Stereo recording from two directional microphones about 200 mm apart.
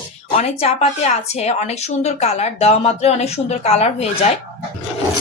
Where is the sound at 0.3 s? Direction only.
30° left (ahead or behind).